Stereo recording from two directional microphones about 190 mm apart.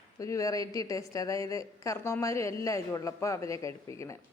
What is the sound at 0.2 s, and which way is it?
A woman's voice, 15° left (ahead or behind).